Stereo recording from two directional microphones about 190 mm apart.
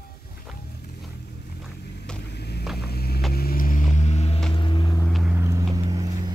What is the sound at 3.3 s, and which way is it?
Vehicle, 50° left (ahead or behind).